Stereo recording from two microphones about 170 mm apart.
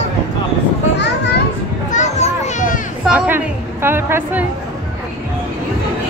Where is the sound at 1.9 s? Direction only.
45° left (ahead or behind).